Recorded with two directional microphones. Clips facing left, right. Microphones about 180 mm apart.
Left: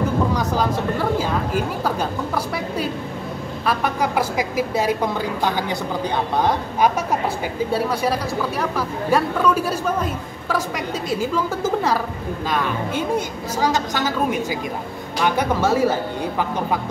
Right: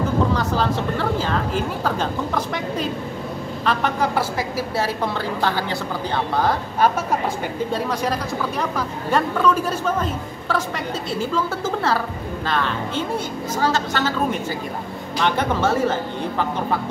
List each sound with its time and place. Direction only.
0.3 s a woman's voice: 10° left (ahead or behind)